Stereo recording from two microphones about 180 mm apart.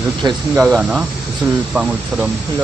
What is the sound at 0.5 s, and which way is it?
Speech, 5° right (ahead or behind).